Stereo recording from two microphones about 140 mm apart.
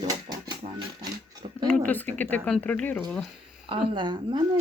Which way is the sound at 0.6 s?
65° right (ahead or behind).